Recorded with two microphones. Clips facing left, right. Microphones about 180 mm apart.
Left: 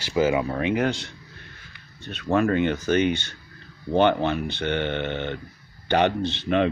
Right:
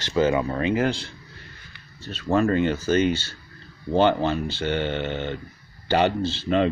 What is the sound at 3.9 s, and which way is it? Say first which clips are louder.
Speech: even; 15° left (ahead or behind).